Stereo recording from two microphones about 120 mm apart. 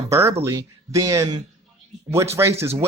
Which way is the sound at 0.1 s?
20° right (ahead or behind).